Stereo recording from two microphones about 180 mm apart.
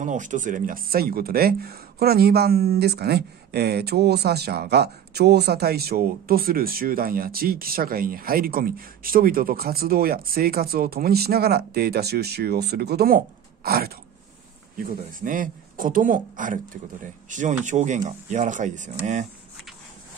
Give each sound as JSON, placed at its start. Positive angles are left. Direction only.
{"t": 0.0, "sound": "speech", "side_deg": -45}